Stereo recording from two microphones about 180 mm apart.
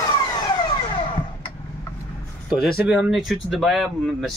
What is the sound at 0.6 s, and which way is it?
Vehicle, 25° left (ahead or behind).